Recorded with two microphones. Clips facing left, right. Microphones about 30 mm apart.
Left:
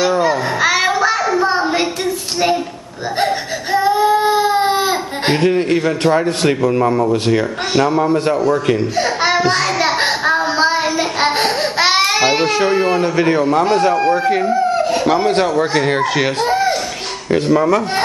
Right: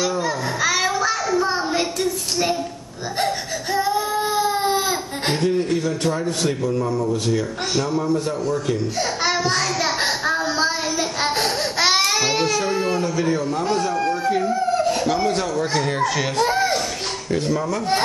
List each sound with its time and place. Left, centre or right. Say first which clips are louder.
0.0 s a sound: left 7 dB; left
3.2 s baby cry: left 5 dB; left
5.4 s a man's voice: left 5 dB; left
8.9 s child singing: left 6 dB; left
12.4 s speech: left 6 dB; left
14.5 s a sound: left 5 dB; left
15.0 s a man's voice: left 7 dB; left
15.6 s speech: left 6 dB; left
16.4 s a sound: left 4 dB; centre
17.3 s speech: left 10 dB; left